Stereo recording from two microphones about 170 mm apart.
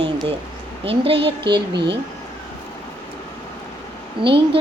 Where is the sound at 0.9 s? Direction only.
35° right (ahead or behind).